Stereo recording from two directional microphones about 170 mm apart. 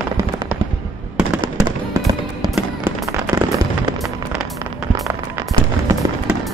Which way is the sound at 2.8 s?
20° right (ahead or behind).